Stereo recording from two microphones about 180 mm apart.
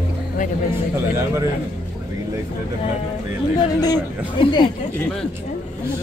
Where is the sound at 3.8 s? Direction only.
25° left (ahead or behind).